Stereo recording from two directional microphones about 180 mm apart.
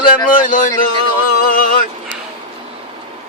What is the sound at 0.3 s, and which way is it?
Speech, 50° left (ahead or behind).